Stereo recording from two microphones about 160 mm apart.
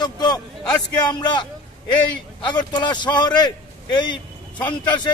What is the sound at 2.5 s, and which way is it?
A man's voice, 25° left (ahead or behind).